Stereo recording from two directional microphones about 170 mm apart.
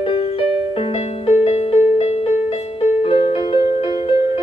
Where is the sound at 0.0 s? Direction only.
35° left (ahead or behind).